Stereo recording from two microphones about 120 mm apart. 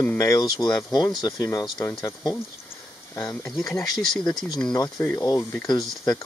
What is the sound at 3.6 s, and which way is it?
Speech, 30° left (ahead or behind).